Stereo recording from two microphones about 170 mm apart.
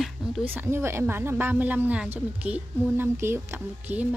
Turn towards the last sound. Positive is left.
turn(degrees=-10)  # may be behind; listen again after turning